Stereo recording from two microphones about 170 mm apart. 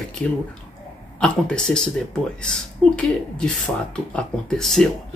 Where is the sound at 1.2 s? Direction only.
5° left (ahead or behind).